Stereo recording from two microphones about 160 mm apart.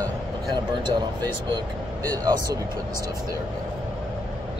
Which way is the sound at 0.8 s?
25° right (ahead or behind).